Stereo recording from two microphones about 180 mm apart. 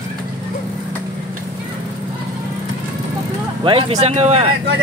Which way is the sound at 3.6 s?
30° right (ahead or behind).